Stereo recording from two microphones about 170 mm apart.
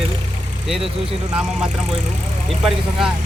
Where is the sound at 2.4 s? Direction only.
5° right (ahead or behind).